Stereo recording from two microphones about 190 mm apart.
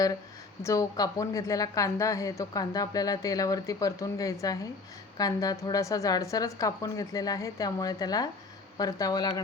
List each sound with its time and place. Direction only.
0.6 s a woman's voice: 15° left (ahead or behind)